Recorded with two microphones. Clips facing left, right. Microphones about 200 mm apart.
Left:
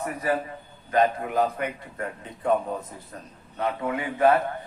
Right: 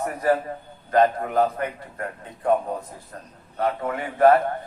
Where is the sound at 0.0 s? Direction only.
45° right (ahead or behind).